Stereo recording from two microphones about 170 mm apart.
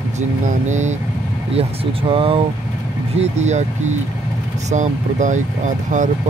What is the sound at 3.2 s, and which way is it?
Speech, 40° right (ahead or behind).